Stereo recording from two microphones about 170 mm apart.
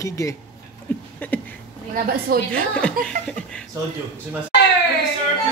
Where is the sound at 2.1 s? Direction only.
60° right (ahead or behind).